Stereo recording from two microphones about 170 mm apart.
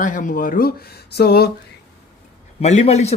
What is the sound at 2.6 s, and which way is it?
Speech, 40° left (ahead or behind).